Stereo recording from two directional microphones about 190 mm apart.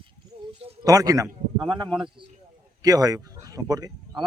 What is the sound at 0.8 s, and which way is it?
A man's voice, 20° right (ahead or behind).